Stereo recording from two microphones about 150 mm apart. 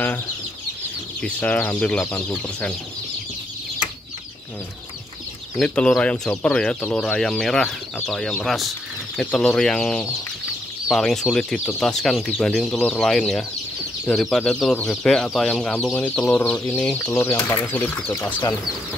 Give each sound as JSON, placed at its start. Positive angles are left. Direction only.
{"t": 1.2, "sound": "speech", "side_deg": 10}
{"t": 5.6, "sound": "speech", "side_deg": 5}